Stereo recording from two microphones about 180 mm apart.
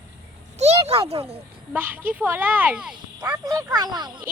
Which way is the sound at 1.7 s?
10° right (ahead or behind).